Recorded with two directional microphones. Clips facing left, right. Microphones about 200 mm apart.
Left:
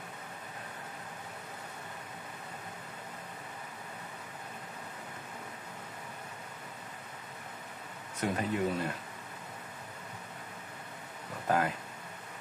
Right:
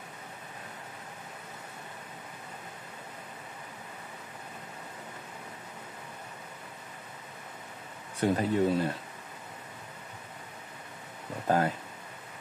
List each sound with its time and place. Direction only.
8.2 s speech: 30° right (ahead or behind)
11.4 s speech: 35° right (ahead or behind)